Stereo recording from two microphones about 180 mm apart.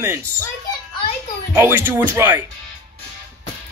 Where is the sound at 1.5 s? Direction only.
10° right (ahead or behind).